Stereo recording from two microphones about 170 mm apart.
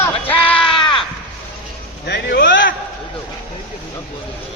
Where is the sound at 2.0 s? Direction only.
70° left (ahead or behind); by 2.7 s 90° left.